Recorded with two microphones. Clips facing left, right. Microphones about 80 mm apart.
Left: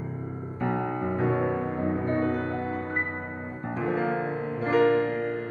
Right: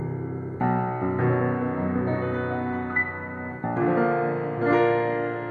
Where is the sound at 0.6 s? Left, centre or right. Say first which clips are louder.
Right 3 dB; right.